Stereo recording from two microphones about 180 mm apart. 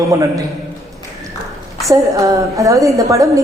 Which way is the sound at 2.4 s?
15° right (ahead or behind).